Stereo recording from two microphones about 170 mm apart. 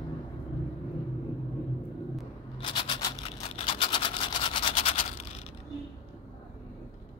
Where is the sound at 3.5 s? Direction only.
40° left (ahead or behind).